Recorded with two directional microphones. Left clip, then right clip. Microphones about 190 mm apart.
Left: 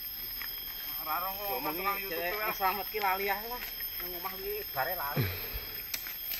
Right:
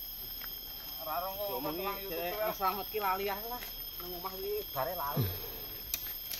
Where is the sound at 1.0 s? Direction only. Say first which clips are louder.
Left 2 dB; 55° right (ahead or behind).